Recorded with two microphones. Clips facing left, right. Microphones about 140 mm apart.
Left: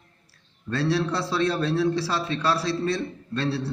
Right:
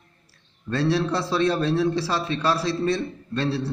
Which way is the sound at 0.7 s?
15° right (ahead or behind).